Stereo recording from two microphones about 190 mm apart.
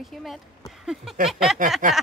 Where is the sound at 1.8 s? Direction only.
45° right (ahead or behind).